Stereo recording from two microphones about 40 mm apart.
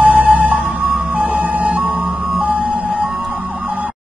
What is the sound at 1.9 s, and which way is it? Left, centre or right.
Music, centre.